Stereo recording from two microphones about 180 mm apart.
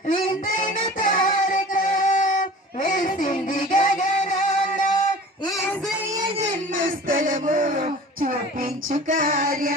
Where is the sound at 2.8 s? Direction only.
45° left (ahead or behind).